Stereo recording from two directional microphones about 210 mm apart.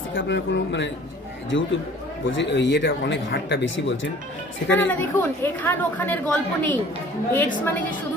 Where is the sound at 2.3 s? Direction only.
60° left (ahead or behind).